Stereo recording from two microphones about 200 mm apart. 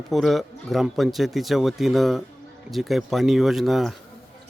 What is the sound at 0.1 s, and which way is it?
Speech, centre (ahead or behind).